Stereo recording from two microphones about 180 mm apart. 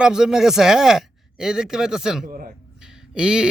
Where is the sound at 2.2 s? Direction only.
45° right (ahead or behind).